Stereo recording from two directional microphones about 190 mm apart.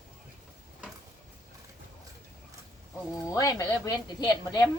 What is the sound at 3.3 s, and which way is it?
A woman's voice, 20° left (ahead or behind).